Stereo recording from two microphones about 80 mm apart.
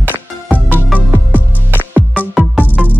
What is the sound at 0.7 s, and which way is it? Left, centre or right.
Music, left.